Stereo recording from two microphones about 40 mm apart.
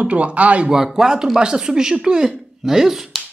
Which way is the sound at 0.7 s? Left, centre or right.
Centre.